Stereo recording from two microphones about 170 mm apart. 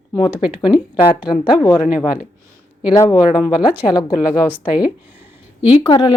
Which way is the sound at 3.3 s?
5° right (ahead or behind).